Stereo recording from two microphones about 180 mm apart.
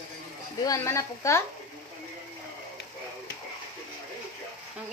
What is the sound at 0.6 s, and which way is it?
Speech, 15° left (ahead or behind).